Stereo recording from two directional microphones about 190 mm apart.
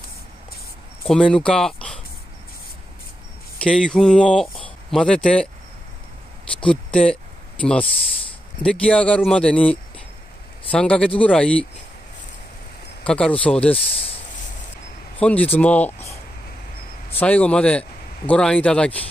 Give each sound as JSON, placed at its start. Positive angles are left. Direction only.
{"t": 1.0, "sound": "speech", "side_deg": 5}
{"t": 3.6, "sound": "speech", "side_deg": 5}
{"t": 6.6, "sound": "speech", "side_deg": 5}
{"t": 8.6, "sound": "speech", "side_deg": 5}
{"t": 13.0, "sound": "speech", "side_deg": 5}
{"t": 13.9, "sound": "a sound", "side_deg": 30}
{"t": 15.1, "sound": "speech", "side_deg": 5}